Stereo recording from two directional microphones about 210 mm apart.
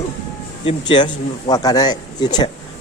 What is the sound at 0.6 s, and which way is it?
Speech, 25° left (ahead or behind).